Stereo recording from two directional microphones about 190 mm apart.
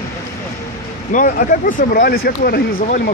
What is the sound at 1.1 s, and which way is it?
Speech, 45° left (ahead or behind).